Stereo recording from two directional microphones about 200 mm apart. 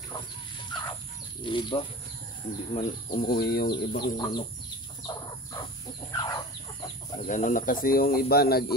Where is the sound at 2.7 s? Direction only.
30° left (ahead or behind).